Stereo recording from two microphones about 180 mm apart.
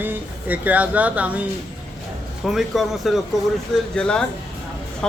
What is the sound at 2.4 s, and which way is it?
Speech, centre (ahead or behind).